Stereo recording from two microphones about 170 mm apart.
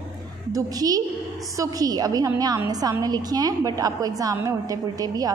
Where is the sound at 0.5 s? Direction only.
20° right (ahead or behind).